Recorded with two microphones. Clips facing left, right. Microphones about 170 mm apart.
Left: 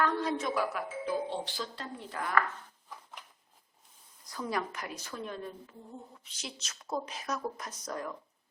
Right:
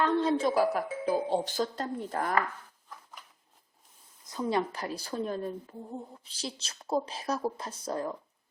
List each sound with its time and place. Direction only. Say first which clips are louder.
0.0 s speech: right 5 dB; 25° right (ahead or behind); by 2.3 s 45° right (ahead or behind)
4.3 s speech: right 5 dB; 25° right (ahead or behind)